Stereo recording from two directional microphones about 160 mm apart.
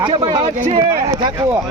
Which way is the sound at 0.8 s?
20° right (ahead or behind).